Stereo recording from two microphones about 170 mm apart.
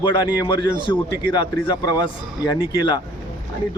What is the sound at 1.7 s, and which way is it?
Speech, 25° left (ahead or behind).